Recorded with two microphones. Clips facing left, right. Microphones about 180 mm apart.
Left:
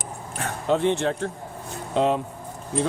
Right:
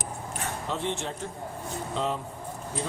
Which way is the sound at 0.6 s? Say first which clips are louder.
Left 12 dB; 60° left (ahead or behind).